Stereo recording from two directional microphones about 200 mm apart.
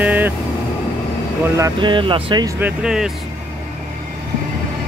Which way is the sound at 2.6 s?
5° right (ahead or behind).